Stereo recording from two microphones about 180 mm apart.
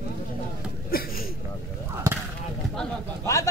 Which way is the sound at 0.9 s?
55° left (ahead or behind).